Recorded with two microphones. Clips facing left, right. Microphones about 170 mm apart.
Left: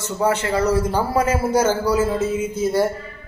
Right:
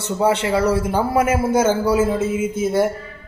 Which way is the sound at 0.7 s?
25° right (ahead or behind).